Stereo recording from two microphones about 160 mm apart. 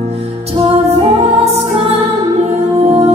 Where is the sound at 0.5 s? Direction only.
35° right (ahead or behind).